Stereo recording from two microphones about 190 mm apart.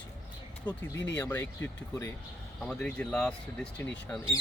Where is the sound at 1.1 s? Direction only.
10° left (ahead or behind).